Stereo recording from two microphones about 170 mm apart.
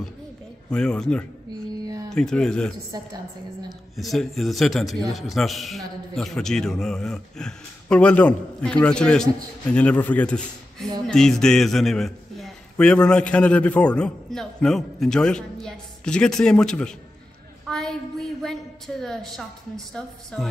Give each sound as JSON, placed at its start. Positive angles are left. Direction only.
{"t": 0.7, "sound": "a man's voice", "side_deg": 5}
{"t": 17.6, "sound": "a sound", "side_deg": 5}
{"t": 18.4, "sound": "a woman's voice", "side_deg": 0}